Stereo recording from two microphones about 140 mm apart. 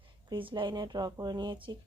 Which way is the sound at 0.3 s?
35° right (ahead or behind).